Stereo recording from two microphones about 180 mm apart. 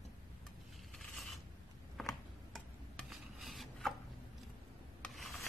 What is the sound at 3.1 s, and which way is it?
Filing, centre (ahead or behind).